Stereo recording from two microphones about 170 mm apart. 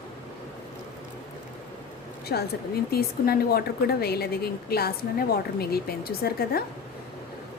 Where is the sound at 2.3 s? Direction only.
70° left (ahead or behind).